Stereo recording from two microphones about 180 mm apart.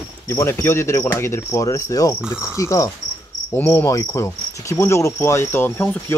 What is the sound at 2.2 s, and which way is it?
Cricket, 5° right (ahead or behind).